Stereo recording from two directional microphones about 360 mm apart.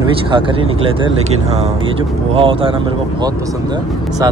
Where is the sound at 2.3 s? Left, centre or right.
Centre.